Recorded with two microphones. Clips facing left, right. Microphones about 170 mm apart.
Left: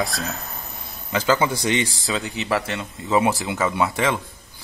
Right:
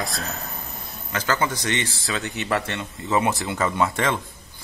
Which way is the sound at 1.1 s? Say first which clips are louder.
Left 4 dB; 15° left (ahead or behind).